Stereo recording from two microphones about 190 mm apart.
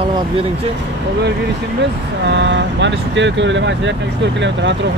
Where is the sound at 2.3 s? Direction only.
65° right (ahead or behind).